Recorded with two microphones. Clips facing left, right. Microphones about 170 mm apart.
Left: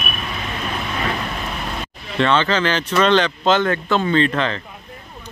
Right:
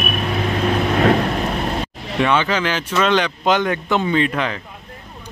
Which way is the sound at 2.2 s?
10° right (ahead or behind).